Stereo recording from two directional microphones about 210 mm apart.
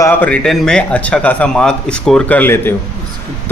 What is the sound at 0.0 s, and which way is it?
A man's voice, 5° left (ahead or behind).